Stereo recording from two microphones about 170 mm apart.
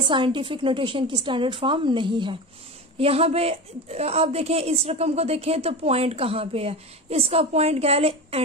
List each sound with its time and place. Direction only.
0.0 s a woman's voice: 30° right (ahead or behind)